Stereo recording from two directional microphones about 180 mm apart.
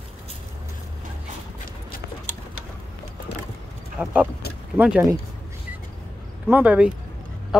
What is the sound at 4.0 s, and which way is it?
Vehicle, 10° right (ahead or behind).